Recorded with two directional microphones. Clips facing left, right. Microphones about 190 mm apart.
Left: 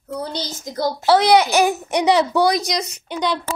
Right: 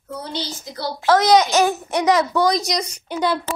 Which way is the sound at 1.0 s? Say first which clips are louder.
Even; 10° left (ahead or behind).